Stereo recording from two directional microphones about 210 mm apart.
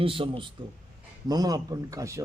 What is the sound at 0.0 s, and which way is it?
A man's voice, 25° right (ahead or behind).